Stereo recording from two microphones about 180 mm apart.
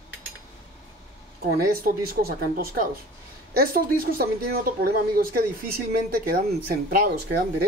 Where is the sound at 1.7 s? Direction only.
55° right (ahead or behind).